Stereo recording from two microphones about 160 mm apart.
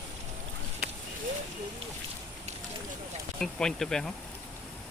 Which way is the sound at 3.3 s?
5° left (ahead or behind).